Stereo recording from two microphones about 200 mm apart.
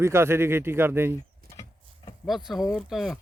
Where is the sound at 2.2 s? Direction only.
Centre (ahead or behind).